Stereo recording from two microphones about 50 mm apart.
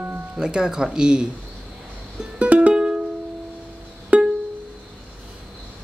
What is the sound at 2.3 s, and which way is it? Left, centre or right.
Music, right.